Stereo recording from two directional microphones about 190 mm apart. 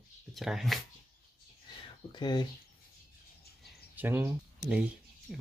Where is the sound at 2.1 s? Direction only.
20° left (ahead or behind).